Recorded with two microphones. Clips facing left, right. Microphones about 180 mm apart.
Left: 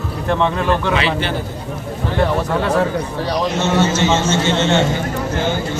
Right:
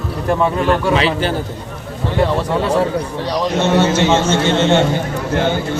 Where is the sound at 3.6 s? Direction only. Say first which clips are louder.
Right 3 dB; 55° right (ahead or behind).